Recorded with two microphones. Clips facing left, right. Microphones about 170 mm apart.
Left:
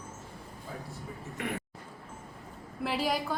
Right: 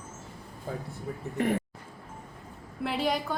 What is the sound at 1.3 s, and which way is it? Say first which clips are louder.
Speech: right 9 dB; 40° right (ahead or behind).